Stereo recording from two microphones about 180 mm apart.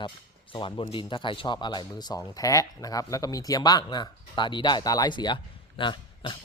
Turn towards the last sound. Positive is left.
turn(degrees=25)  # may be behind; listen again after turning